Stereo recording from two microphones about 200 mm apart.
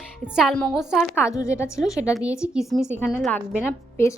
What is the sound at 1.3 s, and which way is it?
Speech, 15° left (ahead or behind).